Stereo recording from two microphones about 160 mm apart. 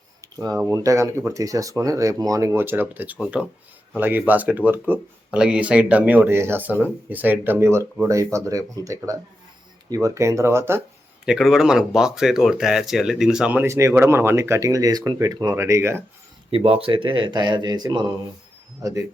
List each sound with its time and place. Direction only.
0.3 s speech: 25° right (ahead or behind)
11.3 s speech: centre (ahead or behind); by 16.0 s 15° right (ahead or behind)
16.5 s speech: 35° right (ahead or behind); by 19.0 s 20° right (ahead or behind)